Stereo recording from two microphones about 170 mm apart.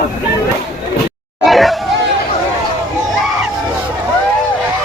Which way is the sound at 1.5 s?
Centre (ahead or behind).